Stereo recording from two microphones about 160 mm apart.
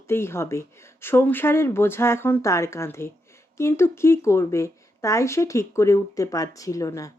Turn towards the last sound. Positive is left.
turn(degrees=20)  # may be behind; listen again after turning